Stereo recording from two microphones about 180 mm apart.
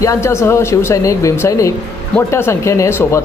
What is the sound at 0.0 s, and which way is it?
Speech, 15° left (ahead or behind).